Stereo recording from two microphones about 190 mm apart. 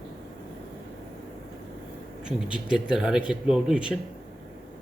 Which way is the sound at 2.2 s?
5° right (ahead or behind).